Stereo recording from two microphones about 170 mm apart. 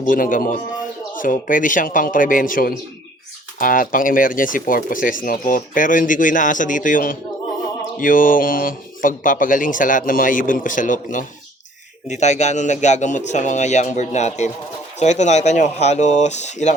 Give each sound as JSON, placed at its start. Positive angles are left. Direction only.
{"t": 0.0, "sound": "speech", "side_deg": 55}